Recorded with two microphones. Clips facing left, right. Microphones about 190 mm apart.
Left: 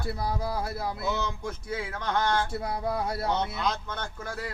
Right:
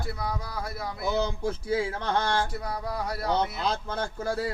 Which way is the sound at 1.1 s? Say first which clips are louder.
Right 5 dB; 30° right (ahead or behind).